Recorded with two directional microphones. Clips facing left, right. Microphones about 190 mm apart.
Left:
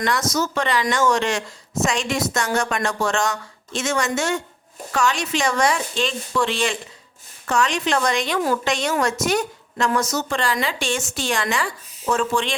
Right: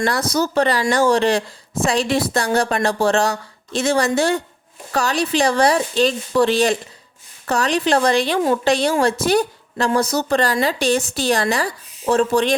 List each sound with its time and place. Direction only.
0.0 s a woman's voice: 35° right (ahead or behind)